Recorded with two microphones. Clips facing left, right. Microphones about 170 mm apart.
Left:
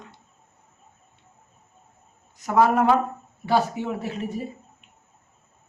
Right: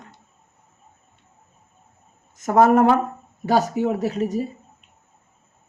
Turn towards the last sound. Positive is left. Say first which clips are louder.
# right 7 dB
turn(degrees=-40)  # may be behind; listen again after turning